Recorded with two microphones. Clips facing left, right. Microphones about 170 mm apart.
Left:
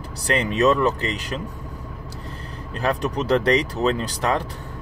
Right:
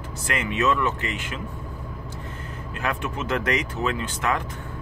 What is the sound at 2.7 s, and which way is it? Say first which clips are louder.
Speech: left 6 dB; 35° left (ahead or behind).